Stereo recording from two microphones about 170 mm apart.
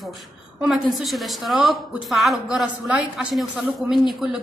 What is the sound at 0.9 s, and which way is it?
A woman's voice, centre (ahead or behind).